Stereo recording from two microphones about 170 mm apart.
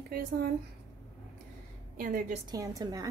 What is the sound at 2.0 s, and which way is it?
Speech, 55° right (ahead or behind).